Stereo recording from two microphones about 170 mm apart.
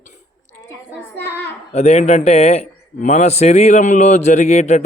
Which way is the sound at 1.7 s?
40° left (ahead or behind).